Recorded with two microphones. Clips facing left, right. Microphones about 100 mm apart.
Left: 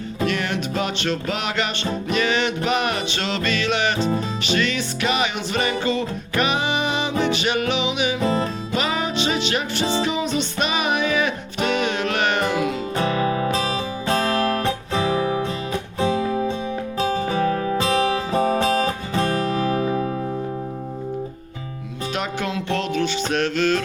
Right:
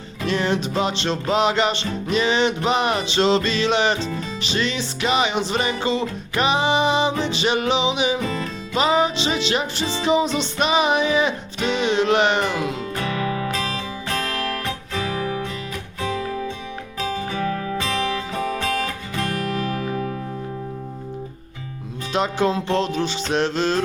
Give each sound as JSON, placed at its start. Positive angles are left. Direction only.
{"t": 0.3, "sound": "music", "side_deg": -30}
{"t": 13.0, "sound": "music", "side_deg": 30}
{"t": 17.0, "sound": "music", "side_deg": 35}
{"t": 22.1, "sound": "music", "side_deg": -30}